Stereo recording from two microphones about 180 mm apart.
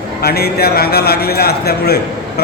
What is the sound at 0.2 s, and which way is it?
A man's voice, 60° left (ahead or behind).